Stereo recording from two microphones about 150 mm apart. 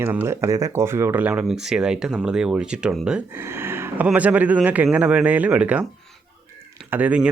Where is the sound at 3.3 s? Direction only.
15° right (ahead or behind).